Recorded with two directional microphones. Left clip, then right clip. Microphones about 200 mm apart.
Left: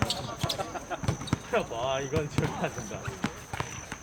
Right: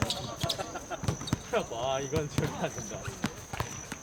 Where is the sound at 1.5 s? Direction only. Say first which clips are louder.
Left 2 dB; 25° right (ahead or behind).